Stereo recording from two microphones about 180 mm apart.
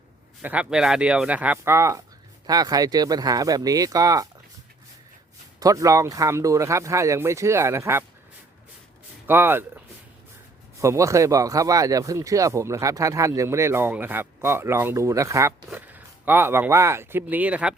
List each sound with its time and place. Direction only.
0.4 s speech: 5° right (ahead or behind)
5.5 s speech: 20° right (ahead or behind)
9.2 s speech: 10° right (ahead or behind)